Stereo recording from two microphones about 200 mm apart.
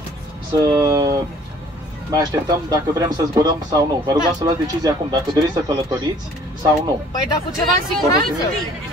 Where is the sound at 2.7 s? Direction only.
20° right (ahead or behind).